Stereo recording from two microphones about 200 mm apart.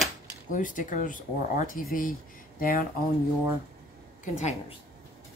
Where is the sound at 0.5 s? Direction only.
40° left (ahead or behind).